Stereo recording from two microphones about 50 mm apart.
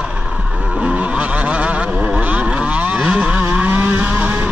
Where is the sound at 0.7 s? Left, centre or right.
Right.